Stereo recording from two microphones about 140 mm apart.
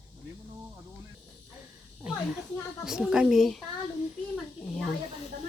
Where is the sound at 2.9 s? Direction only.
5° right (ahead or behind).